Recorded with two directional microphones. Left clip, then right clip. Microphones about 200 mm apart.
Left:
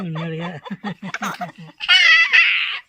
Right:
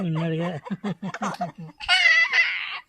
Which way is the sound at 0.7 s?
25° right (ahead or behind).